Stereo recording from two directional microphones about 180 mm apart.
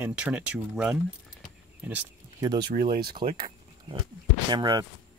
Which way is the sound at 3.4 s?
30° right (ahead or behind).